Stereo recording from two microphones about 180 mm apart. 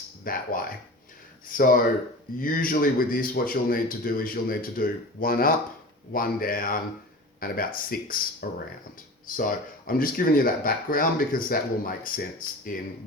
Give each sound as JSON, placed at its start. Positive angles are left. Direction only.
{"t": 0.3, "sound": "speech", "side_deg": 50}
{"t": 1.5, "sound": "speech", "side_deg": 50}